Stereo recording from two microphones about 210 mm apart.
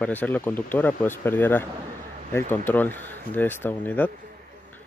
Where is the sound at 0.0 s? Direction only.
10° left (ahead or behind).